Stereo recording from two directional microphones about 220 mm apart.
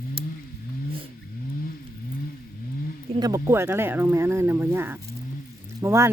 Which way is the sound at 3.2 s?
15° right (ahead or behind).